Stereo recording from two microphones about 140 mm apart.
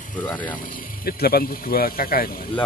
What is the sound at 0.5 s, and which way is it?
Speech, 80° left.